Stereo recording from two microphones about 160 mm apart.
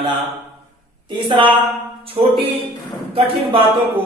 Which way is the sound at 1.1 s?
30° right (ahead or behind).